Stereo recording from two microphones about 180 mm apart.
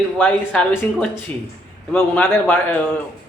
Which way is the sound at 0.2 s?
10° left (ahead or behind).